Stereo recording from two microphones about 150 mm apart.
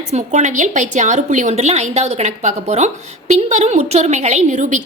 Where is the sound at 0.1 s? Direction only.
50° right (ahead or behind).